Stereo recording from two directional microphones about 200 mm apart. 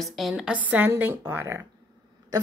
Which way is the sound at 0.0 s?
Centre (ahead or behind).